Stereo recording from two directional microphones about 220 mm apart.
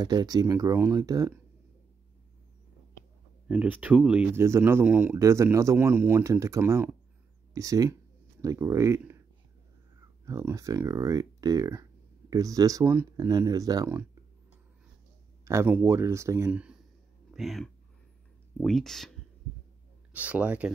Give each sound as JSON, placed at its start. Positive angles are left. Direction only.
{"t": 0.0, "sound": "speech", "side_deg": -15}
{"t": 3.4, "sound": "speech", "side_deg": -5}
{"t": 10.2, "sound": "speech", "side_deg": -15}